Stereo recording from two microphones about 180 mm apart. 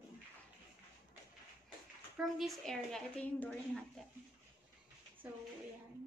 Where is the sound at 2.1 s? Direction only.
Centre (ahead or behind).